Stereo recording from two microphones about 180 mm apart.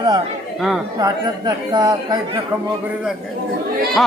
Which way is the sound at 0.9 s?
20° right (ahead or behind).